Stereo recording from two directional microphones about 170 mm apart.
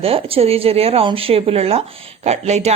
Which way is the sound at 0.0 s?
35° right (ahead or behind).